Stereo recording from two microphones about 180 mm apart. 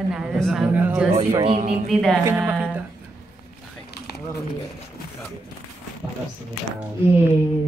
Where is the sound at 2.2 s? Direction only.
10° right (ahead or behind).